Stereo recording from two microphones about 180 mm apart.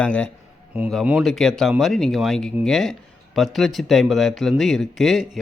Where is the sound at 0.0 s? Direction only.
5° left (ahead or behind).